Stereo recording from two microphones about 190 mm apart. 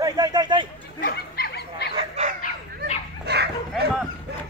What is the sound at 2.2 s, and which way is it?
Bow-wow, 35° right (ahead or behind).